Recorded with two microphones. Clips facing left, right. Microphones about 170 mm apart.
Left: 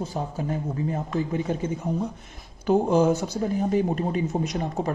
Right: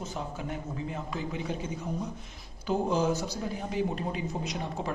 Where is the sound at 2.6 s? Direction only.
55° left (ahead or behind).